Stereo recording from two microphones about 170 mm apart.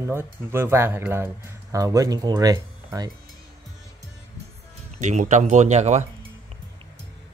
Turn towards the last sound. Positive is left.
turn(degrees=-40)  # may be behind; listen again after turning